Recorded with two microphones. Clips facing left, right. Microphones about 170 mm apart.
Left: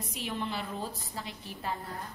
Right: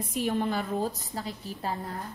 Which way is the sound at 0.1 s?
50° right (ahead or behind).